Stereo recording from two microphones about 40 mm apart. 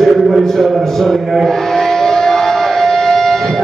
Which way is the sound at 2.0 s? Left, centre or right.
Centre.